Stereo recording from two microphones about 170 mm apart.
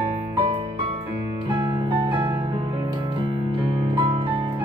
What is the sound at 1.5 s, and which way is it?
Music, 30° right (ahead or behind).